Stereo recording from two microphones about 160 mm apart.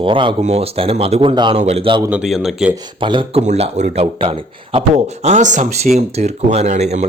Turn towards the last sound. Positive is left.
turn(degrees=-45)  # may be behind; listen again after turning